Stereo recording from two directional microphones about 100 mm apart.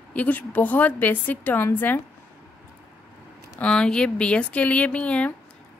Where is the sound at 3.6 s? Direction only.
5° left (ahead or behind).